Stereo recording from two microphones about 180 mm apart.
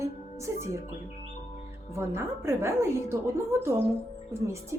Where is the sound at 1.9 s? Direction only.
15° right (ahead or behind).